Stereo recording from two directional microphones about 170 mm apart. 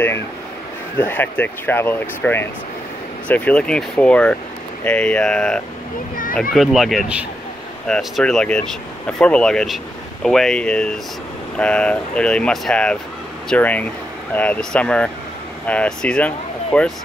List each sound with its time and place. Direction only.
1.0 s speech: 10° left (ahead or behind)